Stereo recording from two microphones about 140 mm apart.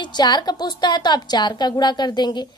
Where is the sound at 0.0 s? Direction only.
30° left (ahead or behind).